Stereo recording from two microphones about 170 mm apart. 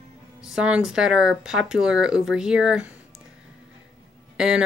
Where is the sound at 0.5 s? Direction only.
5° right (ahead or behind).